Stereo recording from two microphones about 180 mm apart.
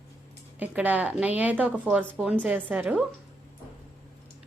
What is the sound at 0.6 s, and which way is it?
A woman's voice, 10° right (ahead or behind).